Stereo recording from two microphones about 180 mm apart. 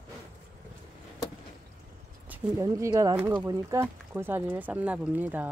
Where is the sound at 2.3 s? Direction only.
15° right (ahead or behind).